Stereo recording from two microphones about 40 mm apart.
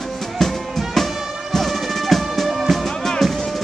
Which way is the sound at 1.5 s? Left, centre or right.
Centre.